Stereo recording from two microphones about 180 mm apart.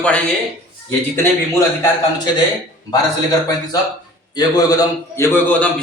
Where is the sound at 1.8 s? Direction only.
25° left (ahead or behind).